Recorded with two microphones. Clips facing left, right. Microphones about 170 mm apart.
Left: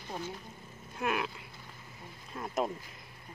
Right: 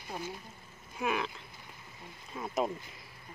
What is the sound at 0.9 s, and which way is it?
Speech, centre (ahead or behind).